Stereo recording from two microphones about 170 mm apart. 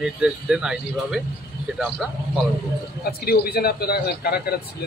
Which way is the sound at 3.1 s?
65° left (ahead or behind).